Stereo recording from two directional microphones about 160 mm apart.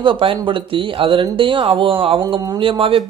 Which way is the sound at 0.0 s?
35° right (ahead or behind).